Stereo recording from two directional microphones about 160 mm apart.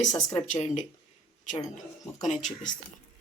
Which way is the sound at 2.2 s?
50° left (ahead or behind).